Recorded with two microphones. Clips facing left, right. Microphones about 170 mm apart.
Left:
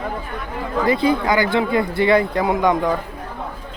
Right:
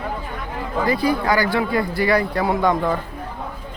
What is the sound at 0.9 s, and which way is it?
Speech, 20° left (ahead or behind).